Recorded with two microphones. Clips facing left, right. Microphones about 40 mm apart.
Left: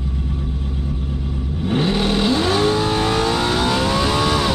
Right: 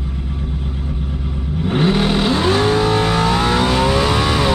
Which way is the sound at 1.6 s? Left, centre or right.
Centre.